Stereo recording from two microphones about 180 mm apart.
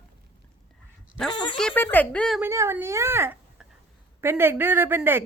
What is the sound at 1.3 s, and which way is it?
Speech, 25° left (ahead or behind).